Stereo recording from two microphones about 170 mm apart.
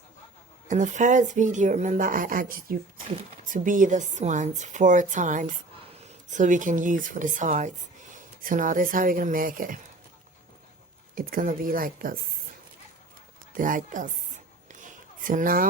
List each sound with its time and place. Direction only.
0.7 s a woman's voice: 50° right (ahead or behind)
11.1 s a woman's voice: 55° right (ahead or behind)
13.5 s a sound: 50° right (ahead or behind)